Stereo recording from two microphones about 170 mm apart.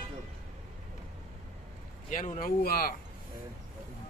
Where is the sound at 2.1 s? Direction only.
55° left (ahead or behind).